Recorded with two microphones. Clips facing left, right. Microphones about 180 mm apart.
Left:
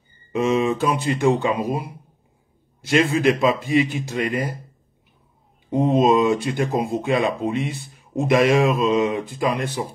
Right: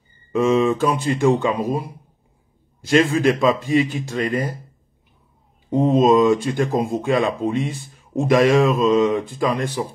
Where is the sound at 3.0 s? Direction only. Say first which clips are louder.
Right 1 dB; 15° left (ahead or behind).